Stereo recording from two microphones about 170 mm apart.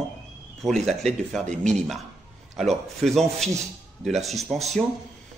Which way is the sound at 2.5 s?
Centre (ahead or behind).